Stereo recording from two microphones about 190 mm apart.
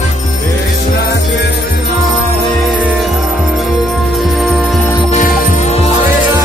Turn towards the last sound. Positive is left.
turn(degrees=45)  # may be behind; listen again after turning